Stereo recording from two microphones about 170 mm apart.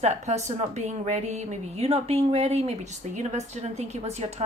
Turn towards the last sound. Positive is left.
turn(degrees=-40)  # may be behind; listen again after turning